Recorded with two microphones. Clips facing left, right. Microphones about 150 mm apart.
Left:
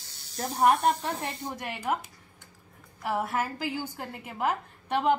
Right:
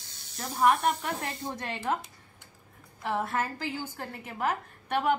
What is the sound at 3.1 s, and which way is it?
A woman's voice, 10° left (ahead or behind).